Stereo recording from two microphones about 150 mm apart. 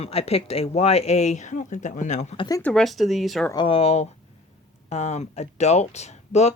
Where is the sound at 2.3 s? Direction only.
25° left (ahead or behind).